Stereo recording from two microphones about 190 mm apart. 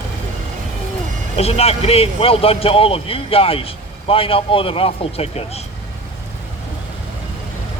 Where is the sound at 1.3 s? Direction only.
30° left (ahead or behind).